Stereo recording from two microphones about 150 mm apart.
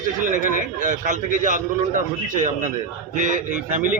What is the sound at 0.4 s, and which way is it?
A man's voice, 60° right (ahead or behind).